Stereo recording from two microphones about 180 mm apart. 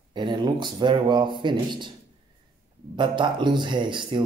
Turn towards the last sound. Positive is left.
turn(degrees=-25)  # may be behind; listen again after turning